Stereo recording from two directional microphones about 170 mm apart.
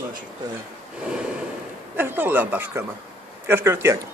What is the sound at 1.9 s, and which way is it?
A man's voice, 10° right (ahead or behind).